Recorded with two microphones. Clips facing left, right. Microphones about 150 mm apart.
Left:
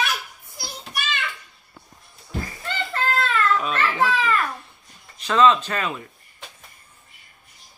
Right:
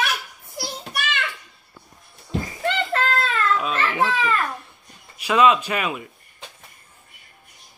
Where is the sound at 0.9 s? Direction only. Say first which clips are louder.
Even; 65° right (ahead or behind).